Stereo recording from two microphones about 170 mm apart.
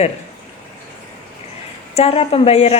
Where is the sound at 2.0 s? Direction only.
35° left (ahead or behind).